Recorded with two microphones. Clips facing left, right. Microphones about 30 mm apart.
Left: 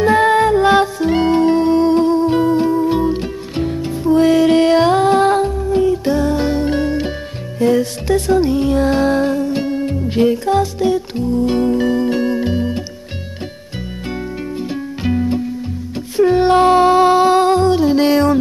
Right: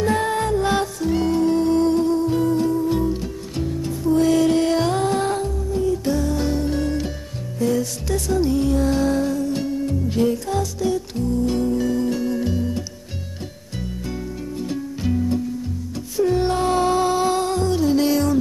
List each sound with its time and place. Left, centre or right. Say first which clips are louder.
0.0 s music: left 9 dB; left
14.6 s music: left 2 dB; left